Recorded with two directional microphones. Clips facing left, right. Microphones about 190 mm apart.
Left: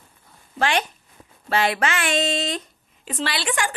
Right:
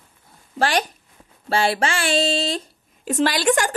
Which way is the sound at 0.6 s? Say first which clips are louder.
Right 2 dB; 35° right (ahead or behind).